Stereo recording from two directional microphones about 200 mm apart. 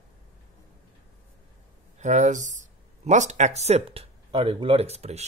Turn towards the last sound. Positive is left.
turn(degrees=-30)  # may be behind; listen again after turning